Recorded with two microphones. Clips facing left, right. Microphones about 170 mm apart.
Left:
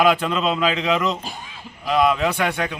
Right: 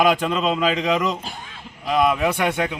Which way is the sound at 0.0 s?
10° right (ahead or behind).